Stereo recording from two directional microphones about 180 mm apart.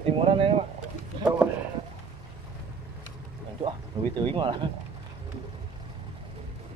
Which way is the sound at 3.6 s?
25° right (ahead or behind).